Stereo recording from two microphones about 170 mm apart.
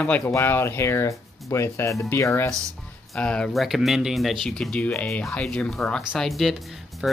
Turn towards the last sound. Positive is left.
turn(degrees=-5)  # may be behind; listen again after turning